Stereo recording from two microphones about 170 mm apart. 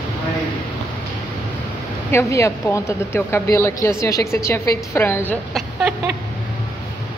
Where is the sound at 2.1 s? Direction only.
15° left (ahead or behind).